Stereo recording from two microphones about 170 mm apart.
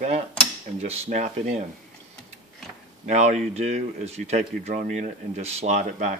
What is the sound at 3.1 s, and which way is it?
Speech, 45° right (ahead or behind).